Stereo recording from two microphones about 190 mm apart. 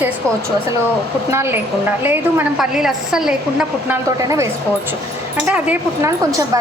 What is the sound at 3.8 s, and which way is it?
Speech, 15° right (ahead or behind).